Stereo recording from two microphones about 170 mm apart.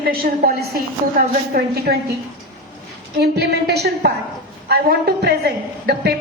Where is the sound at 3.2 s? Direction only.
70° right (ahead or behind).